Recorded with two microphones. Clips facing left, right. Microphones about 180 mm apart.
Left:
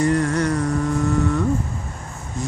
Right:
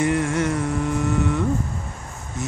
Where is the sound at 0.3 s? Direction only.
25° right (ahead or behind).